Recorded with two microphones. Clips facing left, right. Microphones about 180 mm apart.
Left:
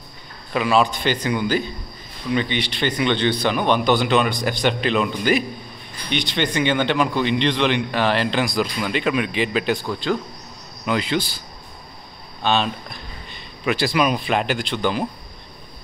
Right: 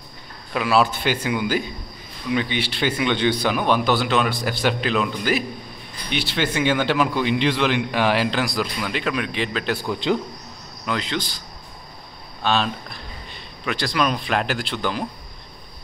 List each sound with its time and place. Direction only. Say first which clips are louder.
0.5 s a man's voice: left 1 dB; centre (ahead or behind)
9.8 s a man's voice: right 1 dB; 20° right (ahead or behind)
10.9 s speech: left 4 dB; 10° left (ahead or behind)
12.4 s speech: left 1 dB; centre (ahead or behind)